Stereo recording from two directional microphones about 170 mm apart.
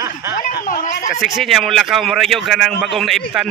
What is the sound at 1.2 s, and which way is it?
A man's voice, centre (ahead or behind).